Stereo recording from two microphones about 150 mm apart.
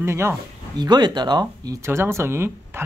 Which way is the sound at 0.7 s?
30° right (ahead or behind).